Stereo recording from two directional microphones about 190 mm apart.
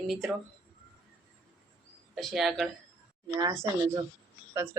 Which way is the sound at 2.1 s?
Centre (ahead or behind).